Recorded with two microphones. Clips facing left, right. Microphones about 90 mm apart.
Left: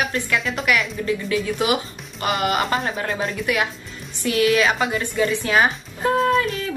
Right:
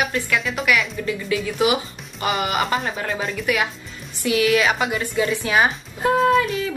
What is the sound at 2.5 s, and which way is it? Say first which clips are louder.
Speech: left 1 dB; 35° left (ahead or behind).